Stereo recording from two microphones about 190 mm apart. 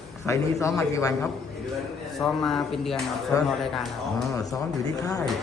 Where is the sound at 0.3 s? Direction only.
15° left (ahead or behind).